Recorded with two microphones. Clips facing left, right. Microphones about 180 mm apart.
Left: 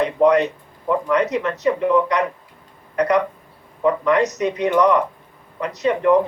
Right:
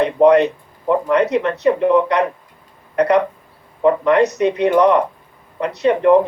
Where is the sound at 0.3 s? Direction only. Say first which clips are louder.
Right 5 dB; 60° right (ahead or behind).